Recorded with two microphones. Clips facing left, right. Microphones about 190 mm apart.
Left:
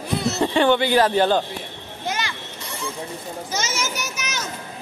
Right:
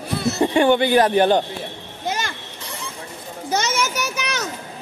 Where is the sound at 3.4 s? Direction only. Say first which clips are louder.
Right 7 dB; 60° right (ahead or behind).